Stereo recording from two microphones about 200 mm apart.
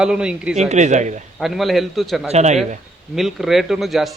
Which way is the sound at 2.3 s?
35° right (ahead or behind).